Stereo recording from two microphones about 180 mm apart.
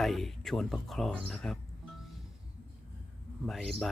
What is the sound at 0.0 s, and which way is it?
Speech, centre (ahead or behind).